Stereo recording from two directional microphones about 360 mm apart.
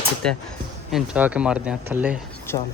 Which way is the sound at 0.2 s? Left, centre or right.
Centre.